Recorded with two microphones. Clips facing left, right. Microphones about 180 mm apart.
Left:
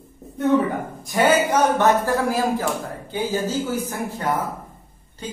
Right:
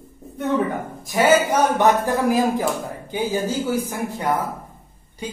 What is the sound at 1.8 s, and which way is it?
Speech, 15° right (ahead or behind).